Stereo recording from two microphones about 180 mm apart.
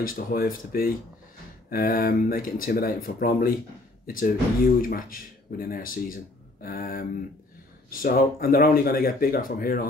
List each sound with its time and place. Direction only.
0.0 s speech: 55° left (ahead or behind)